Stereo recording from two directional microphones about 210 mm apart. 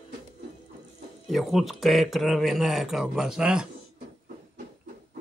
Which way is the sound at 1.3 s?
Centre (ahead or behind).